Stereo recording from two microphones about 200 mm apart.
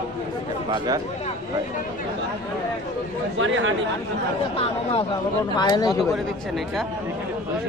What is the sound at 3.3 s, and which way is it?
Speech, 70° right (ahead or behind).